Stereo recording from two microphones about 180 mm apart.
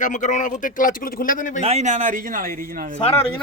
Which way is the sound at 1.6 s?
40° right (ahead or behind).